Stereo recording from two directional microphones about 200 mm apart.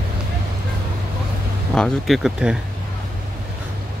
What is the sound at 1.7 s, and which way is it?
Speech, centre (ahead or behind).